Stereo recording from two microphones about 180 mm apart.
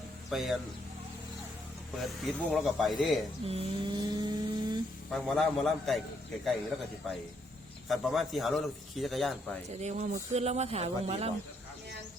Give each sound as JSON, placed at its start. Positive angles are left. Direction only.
{"t": 0.3, "sound": "a man's voice", "side_deg": 0}
{"t": 2.0, "sound": "a man's voice", "side_deg": 0}
{"t": 3.4, "sound": "a sound", "side_deg": -35}
{"t": 5.1, "sound": "a man's voice", "side_deg": 0}
{"t": 7.9, "sound": "a man's voice", "side_deg": 0}
{"t": 9.7, "sound": "speech", "side_deg": -40}